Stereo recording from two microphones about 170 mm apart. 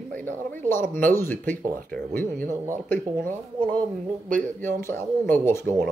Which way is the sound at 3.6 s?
10° left (ahead or behind).